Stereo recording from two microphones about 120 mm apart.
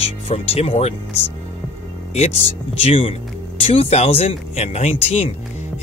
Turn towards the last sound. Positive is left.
turn(degrees=65)  # may be behind; listen again after turning